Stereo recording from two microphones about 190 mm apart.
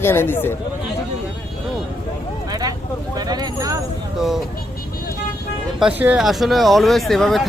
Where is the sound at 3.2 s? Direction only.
20° right (ahead or behind).